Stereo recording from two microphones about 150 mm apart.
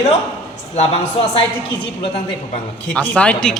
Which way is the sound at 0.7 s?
45° left (ahead or behind).